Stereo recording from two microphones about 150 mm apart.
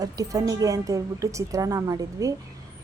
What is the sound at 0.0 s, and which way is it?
Speech, 25° right (ahead or behind).